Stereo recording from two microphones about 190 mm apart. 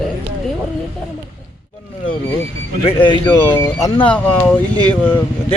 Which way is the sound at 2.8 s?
25° left (ahead or behind).